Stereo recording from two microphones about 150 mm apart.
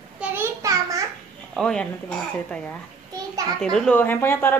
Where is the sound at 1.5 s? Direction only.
5° left (ahead or behind).